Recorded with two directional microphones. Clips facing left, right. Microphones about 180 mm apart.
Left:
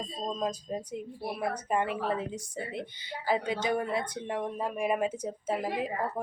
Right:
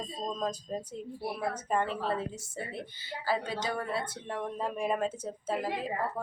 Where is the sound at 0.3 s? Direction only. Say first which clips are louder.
Left 2 dB; 10° left (ahead or behind).